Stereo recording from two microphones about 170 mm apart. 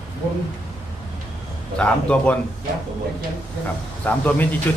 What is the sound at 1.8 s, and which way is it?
Speech, 5° left (ahead or behind).